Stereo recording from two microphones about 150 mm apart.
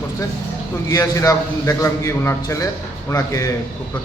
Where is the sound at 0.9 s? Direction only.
20° left (ahead or behind).